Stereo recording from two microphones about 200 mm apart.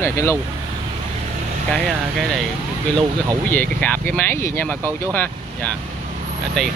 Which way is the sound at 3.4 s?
10° left (ahead or behind).